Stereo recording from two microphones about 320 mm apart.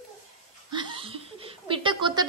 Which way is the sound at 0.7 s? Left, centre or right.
Centre.